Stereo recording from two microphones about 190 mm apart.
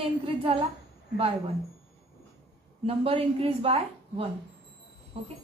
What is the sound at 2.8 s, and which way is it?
Speech, 30° right (ahead or behind).